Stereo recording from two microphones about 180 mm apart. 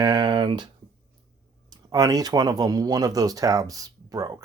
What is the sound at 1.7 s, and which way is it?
Speech, 20° right (ahead or behind).